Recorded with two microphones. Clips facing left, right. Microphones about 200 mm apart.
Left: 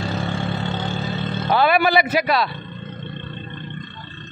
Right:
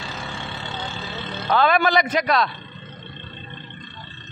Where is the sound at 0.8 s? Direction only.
50° left (ahead or behind).